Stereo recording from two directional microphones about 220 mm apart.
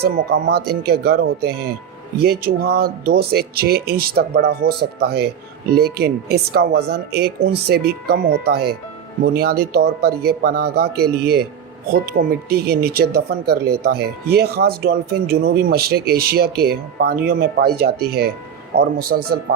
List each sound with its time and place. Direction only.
0.0 s speech: 45° right (ahead or behind)